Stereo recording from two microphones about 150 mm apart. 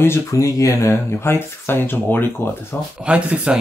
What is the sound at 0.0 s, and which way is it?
Speech, 15° left (ahead or behind).